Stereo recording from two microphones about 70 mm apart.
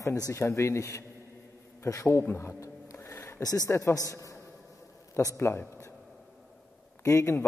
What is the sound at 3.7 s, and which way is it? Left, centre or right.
A man's voice, left.